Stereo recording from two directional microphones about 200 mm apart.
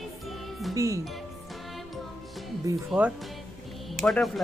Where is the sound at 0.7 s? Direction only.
15° right (ahead or behind).